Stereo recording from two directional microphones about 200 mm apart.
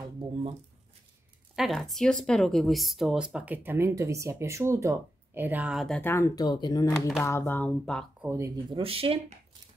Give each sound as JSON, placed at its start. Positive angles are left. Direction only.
{"t": 1.5, "sound": "speech", "side_deg": 0}
{"t": 7.2, "sound": "speech", "side_deg": 10}
{"t": 8.2, "sound": "speech", "side_deg": -15}